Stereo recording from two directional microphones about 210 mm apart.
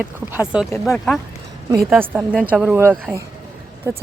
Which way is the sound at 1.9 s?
10° right (ahead or behind).